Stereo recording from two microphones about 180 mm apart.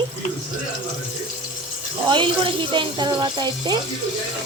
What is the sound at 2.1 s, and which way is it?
Speech, 25° right (ahead or behind).